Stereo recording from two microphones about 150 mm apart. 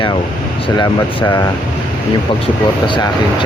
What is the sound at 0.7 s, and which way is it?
Speech, 25° left (ahead or behind).